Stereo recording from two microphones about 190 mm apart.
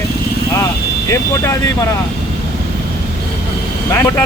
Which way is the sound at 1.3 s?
15° left (ahead or behind).